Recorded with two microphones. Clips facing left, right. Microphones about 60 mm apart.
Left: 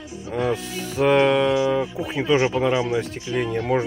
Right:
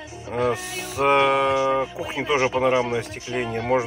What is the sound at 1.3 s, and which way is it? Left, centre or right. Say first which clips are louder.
Speech: left 1 dB; right.